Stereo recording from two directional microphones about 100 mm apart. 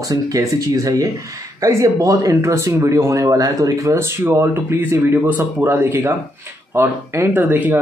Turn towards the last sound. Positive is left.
turn(degrees=-15)  # may be behind; listen again after turning